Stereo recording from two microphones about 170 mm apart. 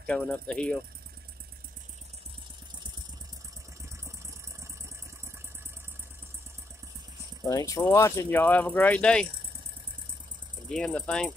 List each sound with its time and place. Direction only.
0.0 s speech: 5° left (ahead or behind)
7.4 s speech: 20° left (ahead or behind)
10.7 s speech: 5° left (ahead or behind)